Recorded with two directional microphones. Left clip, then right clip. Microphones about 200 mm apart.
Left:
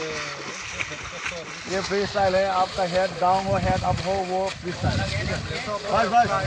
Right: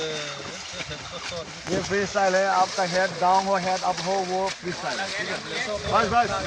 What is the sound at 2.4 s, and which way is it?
Speech, 35° left (ahead or behind).